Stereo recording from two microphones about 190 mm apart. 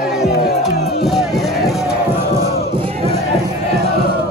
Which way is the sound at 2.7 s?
30° right (ahead or behind).